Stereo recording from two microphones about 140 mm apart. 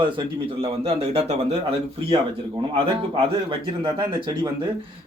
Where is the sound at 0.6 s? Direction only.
45° right (ahead or behind).